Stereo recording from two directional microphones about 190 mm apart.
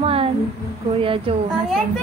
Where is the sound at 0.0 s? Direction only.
30° right (ahead or behind).